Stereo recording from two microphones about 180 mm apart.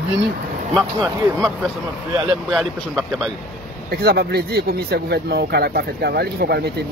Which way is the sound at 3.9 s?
60° right (ahead or behind).